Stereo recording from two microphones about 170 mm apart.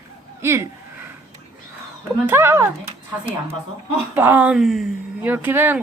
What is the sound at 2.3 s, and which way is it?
Speech, 15° right (ahead or behind).